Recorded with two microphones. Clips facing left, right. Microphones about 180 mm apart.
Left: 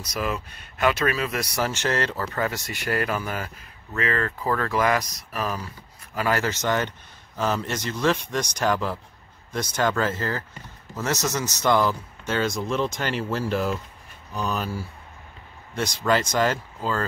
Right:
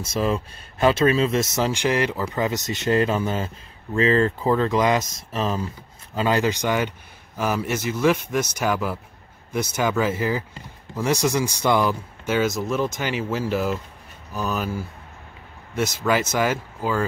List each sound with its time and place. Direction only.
0.0 s speech: 30° right (ahead or behind); by 14.7 s 5° right (ahead or behind)
15.7 s speech: 5° right (ahead or behind)